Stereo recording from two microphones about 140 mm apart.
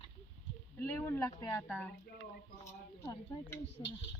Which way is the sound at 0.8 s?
15° left (ahead or behind).